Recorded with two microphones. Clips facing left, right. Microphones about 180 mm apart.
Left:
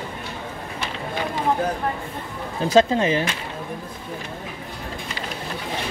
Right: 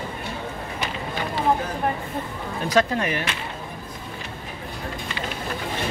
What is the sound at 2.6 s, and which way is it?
Speech, 25° left (ahead or behind).